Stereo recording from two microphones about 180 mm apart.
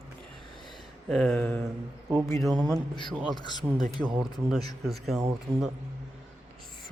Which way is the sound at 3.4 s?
25° left (ahead or behind).